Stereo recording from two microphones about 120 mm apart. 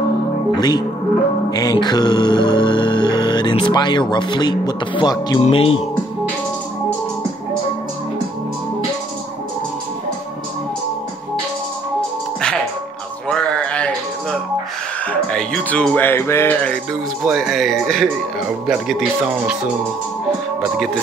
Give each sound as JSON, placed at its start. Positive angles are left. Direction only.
{"t": 0.6, "sound": "music", "side_deg": 35}
{"t": 5.4, "sound": "speech", "side_deg": 50}
{"t": 13.3, "sound": "a sound", "side_deg": 10}
{"t": 15.3, "sound": "a sound", "side_deg": 5}
{"t": 16.1, "sound": "music", "side_deg": 20}
{"t": 17.2, "sound": "speech", "side_deg": -5}